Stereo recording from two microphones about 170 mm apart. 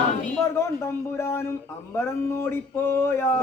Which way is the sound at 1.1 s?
15° left (ahead or behind).